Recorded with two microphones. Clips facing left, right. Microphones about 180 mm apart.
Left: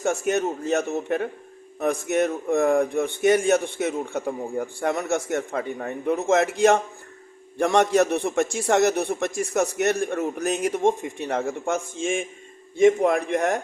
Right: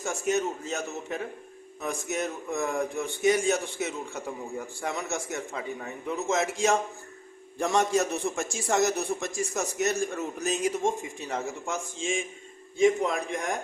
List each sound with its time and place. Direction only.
0.0 s a man's voice: 60° left (ahead or behind)